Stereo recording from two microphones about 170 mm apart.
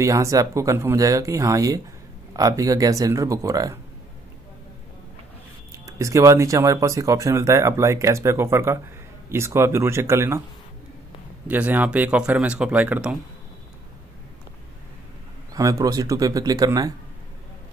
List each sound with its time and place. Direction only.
0.0 s speech: 20° right (ahead or behind)
5.7 s speech: 20° right (ahead or behind)
11.4 s speech: 10° right (ahead or behind)
15.5 s speech: 20° right (ahead or behind)